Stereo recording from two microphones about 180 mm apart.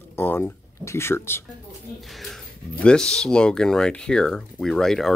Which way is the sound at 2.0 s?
Centre (ahead or behind).